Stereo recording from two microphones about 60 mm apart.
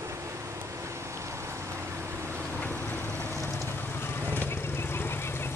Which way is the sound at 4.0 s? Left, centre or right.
Left.